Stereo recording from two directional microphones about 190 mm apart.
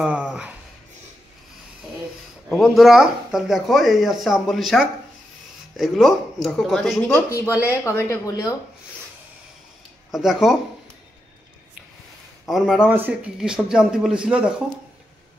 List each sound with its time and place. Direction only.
0.0 s a sound: 5° right (ahead or behind)
2.5 s speech: centre (ahead or behind); by 8.5 s 15° left (ahead or behind)
10.1 s speech: centre (ahead or behind)
12.4 s speech: centre (ahead or behind)